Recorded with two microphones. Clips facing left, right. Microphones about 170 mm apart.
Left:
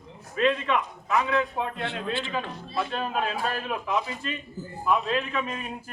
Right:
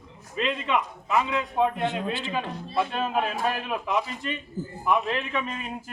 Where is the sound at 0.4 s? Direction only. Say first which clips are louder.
Left 3 dB; 10° right (ahead or behind).